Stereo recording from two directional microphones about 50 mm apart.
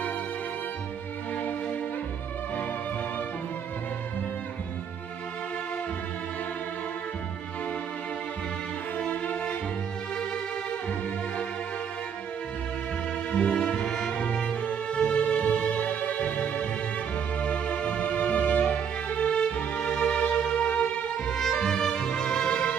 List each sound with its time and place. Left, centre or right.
8.9 s violin: left
13.3 s music: left
14.6 s music: left
21.3 s music: centre